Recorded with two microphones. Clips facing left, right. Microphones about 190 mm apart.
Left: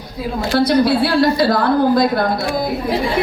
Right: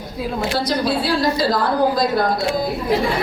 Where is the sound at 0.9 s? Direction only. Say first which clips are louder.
Left 4 dB; 60° left (ahead or behind).